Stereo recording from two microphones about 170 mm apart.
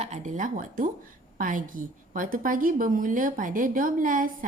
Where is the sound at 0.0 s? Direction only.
45° right (ahead or behind).